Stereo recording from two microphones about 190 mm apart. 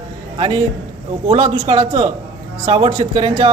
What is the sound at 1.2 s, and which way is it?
Speech, 30° right (ahead or behind).